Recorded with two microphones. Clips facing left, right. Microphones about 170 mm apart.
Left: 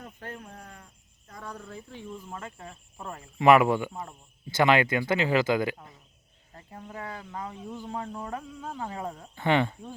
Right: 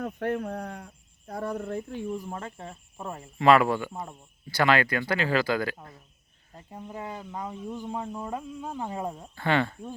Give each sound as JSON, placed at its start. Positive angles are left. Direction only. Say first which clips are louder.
{"t": 0.0, "sound": "speech", "louder": "right 12 dB", "side_deg": -60}
{"t": 2.3, "sound": "speech", "louder": "right 3 dB", "side_deg": -30}
{"t": 3.0, "sound": "speech", "louder": "right 3 dB", "side_deg": -20}
{"t": 3.3, "sound": "speech", "louder": "left 1 dB", "side_deg": 15}
{"t": 6.7, "sound": "speech", "louder": "right 2 dB", "side_deg": -15}
{"t": 9.3, "sound": "speech", "louder": "left 1 dB", "side_deg": 20}